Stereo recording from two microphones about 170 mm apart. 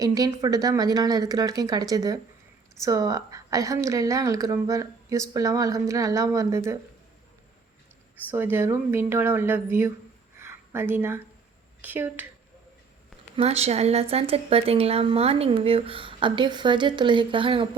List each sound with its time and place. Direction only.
0.0 s a woman's voice: 20° right (ahead or behind)
8.3 s speech: 10° right (ahead or behind)
10.3 s a sound: 15° right (ahead or behind)
11.8 s speech: 10° right (ahead or behind)
13.3 s a woman's voice: 35° right (ahead or behind)